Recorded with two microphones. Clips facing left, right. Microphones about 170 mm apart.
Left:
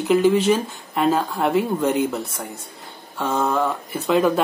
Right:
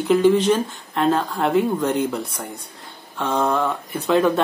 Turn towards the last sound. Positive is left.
turn(degrees=5)  # may be behind; listen again after turning